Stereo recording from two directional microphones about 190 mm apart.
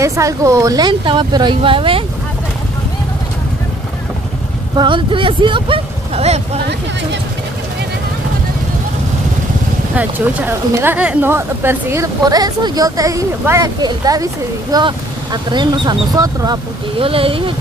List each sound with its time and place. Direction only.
0.0 s speech: 15° right (ahead or behind)
4.7 s speech: 25° right (ahead or behind)
9.9 s speech: 10° right (ahead or behind); by 17.6 s 30° right (ahead or behind)